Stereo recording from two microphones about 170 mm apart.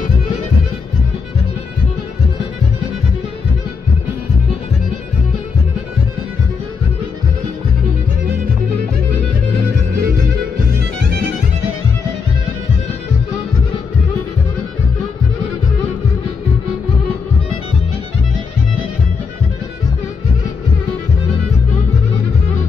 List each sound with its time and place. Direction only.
9.9 s music: 70° right (ahead or behind)